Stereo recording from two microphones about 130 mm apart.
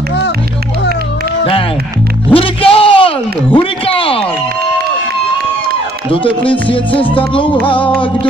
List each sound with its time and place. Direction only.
2.3 s a man's voice: 45° left (ahead or behind)
6.5 s a man's voice: 40° left (ahead or behind)
7.2 s music: 40° left (ahead or behind)